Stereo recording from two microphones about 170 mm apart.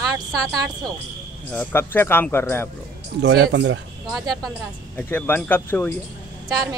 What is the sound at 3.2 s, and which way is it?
Speech, 90° right.